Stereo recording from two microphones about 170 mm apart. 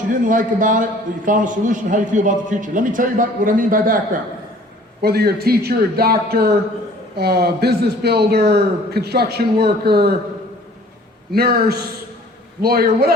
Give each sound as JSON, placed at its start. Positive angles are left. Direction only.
{"t": 0.1, "sound": "a man's voice", "side_deg": -50}
{"t": 5.0, "sound": "a man's voice", "side_deg": -70}
{"t": 11.3, "sound": "a man's voice", "side_deg": -65}